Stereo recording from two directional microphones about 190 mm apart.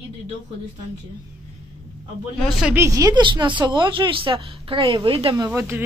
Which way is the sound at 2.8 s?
20° right (ahead or behind).